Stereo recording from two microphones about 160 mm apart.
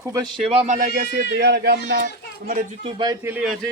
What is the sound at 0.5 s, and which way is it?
Speech, 45° right (ahead or behind).